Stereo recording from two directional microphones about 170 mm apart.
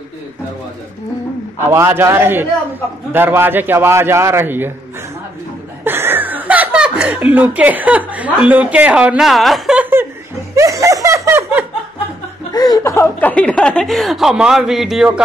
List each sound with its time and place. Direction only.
1.7 s a man's voice: 15° right (ahead or behind)
5.9 s speech: 10° right (ahead or behind)
10.5 s snicker: 20° right (ahead or behind)
12.5 s a woman's voice: 25° left (ahead or behind); by 15.2 s 5° right (ahead or behind)